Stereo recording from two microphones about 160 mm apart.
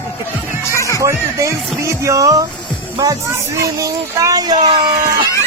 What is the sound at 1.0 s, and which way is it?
Music, 20° right (ahead or behind).